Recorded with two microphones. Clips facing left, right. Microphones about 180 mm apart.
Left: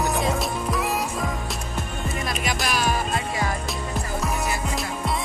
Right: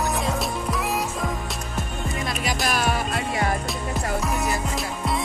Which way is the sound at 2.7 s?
60° right (ahead or behind).